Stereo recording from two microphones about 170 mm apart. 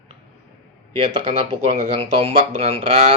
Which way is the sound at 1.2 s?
35° right (ahead or behind).